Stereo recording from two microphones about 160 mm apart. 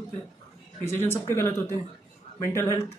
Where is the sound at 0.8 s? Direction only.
15° left (ahead or behind).